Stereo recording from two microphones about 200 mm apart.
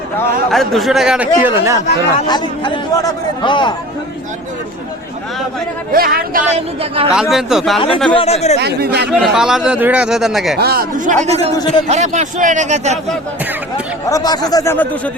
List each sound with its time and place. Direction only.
0.5 s a man's voice: centre (ahead or behind)
2.2 s speech: 20° left (ahead or behind)
5.9 s speech: 50° right (ahead or behind)
6.5 s a man's voice: 30° right (ahead or behind)
7.2 s a man's voice: centre (ahead or behind)
7.8 s speech: 25° left (ahead or behind)
8.5 s speech: 55° right (ahead or behind)
9.0 s a man's voice: 5° right (ahead or behind)
10.6 s a man's voice: 50° right (ahead or behind); by 13.0 s 35° right (ahead or behind)
14.1 s speech: 20° left (ahead or behind)